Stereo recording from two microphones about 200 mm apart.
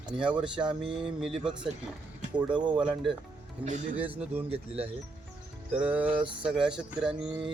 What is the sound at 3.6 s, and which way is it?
Speech, 30° right (ahead or behind).